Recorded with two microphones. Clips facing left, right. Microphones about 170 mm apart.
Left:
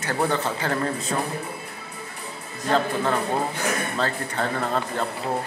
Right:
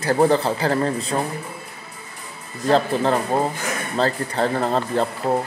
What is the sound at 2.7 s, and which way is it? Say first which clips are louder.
A man's voice: right 4 dB; 30° right (ahead or behind).